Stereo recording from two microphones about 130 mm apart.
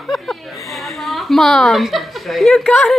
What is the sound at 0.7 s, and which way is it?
A woman's voice, centre (ahead or behind).